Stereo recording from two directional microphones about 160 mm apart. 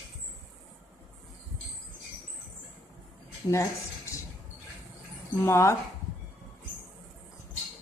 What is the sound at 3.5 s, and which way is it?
Speech, 20° left (ahead or behind).